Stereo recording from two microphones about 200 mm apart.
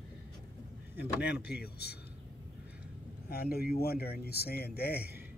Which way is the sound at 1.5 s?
55° left (ahead or behind).